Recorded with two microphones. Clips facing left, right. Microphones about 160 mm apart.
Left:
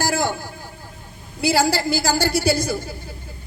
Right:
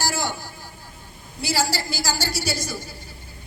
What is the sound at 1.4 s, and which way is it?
A man's voice, 55° left (ahead or behind).